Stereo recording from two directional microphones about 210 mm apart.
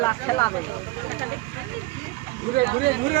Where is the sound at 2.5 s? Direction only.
45° right (ahead or behind).